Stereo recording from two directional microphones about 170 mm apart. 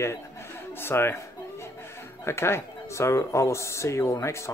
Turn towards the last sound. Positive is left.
turn(degrees=15)  # may be behind; listen again after turning